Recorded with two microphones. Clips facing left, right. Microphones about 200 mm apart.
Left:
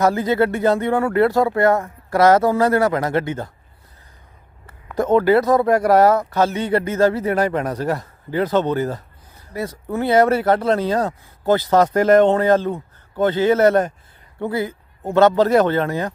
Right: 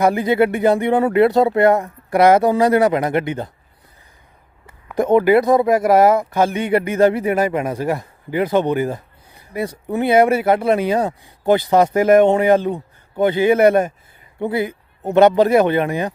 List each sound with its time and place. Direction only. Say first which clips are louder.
0.0 s speech: right 2 dB; 15° right (ahead or behind)
4.9 s speech: right 2 dB; 15° right (ahead or behind)